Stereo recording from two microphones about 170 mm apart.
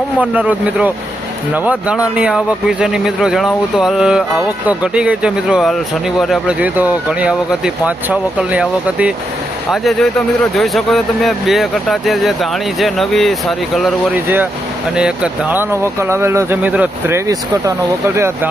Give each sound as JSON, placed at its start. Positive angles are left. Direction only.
{"t": 0.2, "sound": "speech", "side_deg": -10}
{"t": 14.9, "sound": "speech", "side_deg": -5}